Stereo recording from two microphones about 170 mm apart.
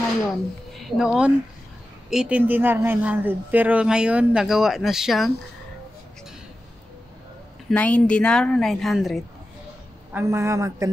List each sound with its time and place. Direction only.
0.7 s a man's voice: centre (ahead or behind)
7.7 s a woman's voice: 10° left (ahead or behind)
10.1 s a man's voice: 15° right (ahead or behind)